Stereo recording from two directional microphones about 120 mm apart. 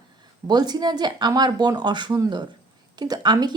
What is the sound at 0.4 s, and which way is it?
A woman's voice, 35° right (ahead or behind).